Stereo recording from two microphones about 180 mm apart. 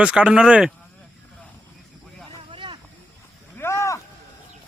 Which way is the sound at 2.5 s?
25° right (ahead or behind).